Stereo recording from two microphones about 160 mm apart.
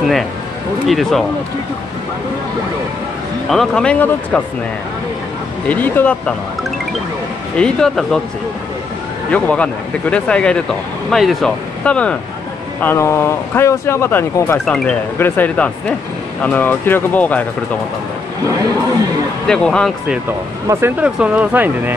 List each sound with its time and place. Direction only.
0.8 s speech: centre (ahead or behind)
3.4 s speech: 5° left (ahead or behind)
5.7 s speech: 10° left (ahead or behind)
7.5 s speech: 5° left (ahead or behind)
9.3 s speech: 10° left (ahead or behind)
14.6 s speech: 5° left (ahead or behind)
18.5 s speech: 25° right (ahead or behind)
19.4 s speech: 5° left (ahead or behind)
20.6 s speech: 15° right (ahead or behind)